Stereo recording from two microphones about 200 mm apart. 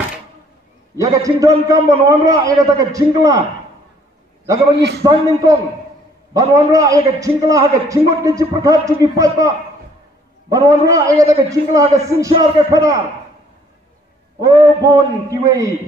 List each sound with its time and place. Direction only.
0.9 s a man's voice: 15° right (ahead or behind)
4.7 s a man's voice: 55° right (ahead or behind)
5.0 s a man's voice: 15° right (ahead or behind)
10.5 s a man's voice: 15° right (ahead or behind)
14.4 s a man's voice: 20° right (ahead or behind)